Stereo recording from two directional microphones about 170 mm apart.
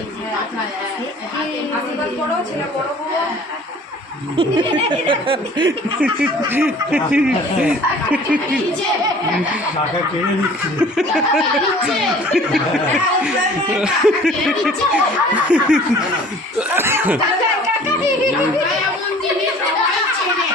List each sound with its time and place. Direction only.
4.4 s snicker: 30° right (ahead or behind)
6.5 s speech: 10° right (ahead or behind)
10.8 s speech: 5° right (ahead or behind)